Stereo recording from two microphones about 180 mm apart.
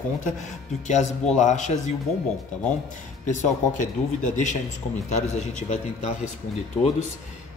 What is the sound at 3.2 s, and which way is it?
Speech, 45° left (ahead or behind).